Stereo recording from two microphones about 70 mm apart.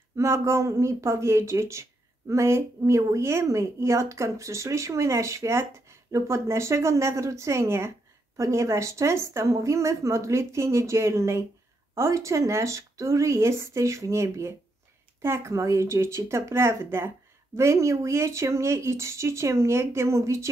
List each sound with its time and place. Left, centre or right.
0.1 s speech: right
17.6 s speech: right